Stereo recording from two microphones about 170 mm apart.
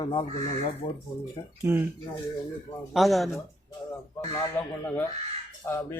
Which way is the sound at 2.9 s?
Centre (ahead or behind).